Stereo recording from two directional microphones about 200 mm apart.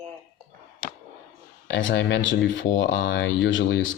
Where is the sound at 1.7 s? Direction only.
65° left (ahead or behind).